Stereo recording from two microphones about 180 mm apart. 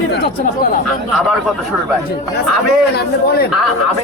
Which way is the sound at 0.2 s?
50° left (ahead or behind).